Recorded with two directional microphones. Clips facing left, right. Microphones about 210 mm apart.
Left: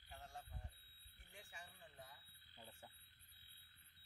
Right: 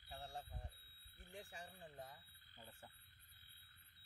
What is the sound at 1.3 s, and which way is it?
Speech, 40° right (ahead or behind).